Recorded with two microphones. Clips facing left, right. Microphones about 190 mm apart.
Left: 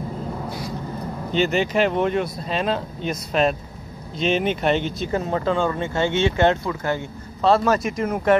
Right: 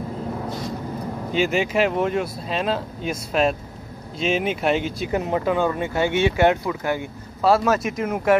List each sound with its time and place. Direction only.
1.3 s speech: 5° right (ahead or behind)